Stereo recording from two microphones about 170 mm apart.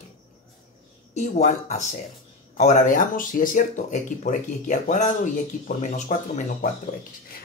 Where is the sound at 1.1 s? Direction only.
40° left (ahead or behind).